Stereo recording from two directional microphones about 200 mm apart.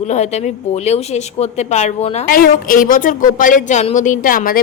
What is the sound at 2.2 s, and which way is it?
Speech, 45° left (ahead or behind).